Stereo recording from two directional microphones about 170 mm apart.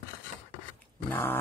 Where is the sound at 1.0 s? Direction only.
10° left (ahead or behind).